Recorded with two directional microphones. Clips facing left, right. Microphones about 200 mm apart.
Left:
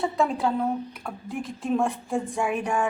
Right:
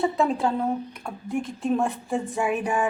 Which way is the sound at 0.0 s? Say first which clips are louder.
Right 2 dB; centre (ahead or behind).